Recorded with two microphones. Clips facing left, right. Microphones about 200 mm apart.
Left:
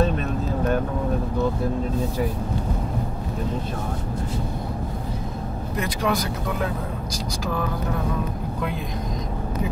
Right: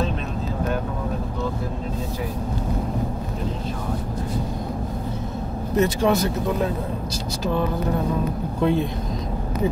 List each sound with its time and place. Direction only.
5.8 s speech: 25° right (ahead or behind)
8.5 s speech: 30° right (ahead or behind)